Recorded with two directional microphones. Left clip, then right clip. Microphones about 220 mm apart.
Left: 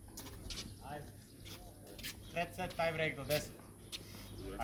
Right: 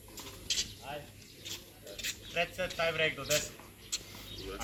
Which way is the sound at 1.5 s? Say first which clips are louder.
Right 8 dB; 45° left (ahead or behind).